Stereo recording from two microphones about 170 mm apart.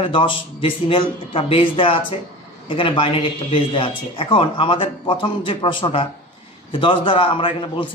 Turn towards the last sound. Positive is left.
turn(degrees=30)  # may be behind; listen again after turning